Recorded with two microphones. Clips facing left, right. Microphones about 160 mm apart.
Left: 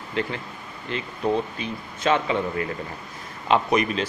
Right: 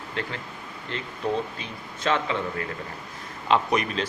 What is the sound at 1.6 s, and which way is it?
Speech, 15° left (ahead or behind).